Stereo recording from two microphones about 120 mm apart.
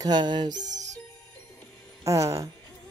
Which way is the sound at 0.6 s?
85° right.